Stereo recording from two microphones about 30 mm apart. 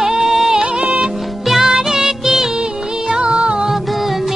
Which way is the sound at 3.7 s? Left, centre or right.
Centre.